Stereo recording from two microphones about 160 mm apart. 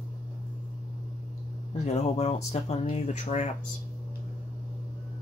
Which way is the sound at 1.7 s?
40° left (ahead or behind).